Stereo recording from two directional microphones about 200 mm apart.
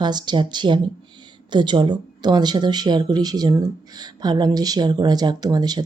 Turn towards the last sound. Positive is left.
turn(degrees=-20)  # may be behind; listen again after turning